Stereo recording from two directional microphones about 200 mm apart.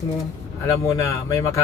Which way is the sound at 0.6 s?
15° left (ahead or behind).